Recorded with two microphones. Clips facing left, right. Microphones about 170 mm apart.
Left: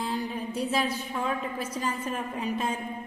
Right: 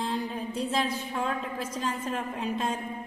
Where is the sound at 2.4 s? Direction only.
5° left (ahead or behind).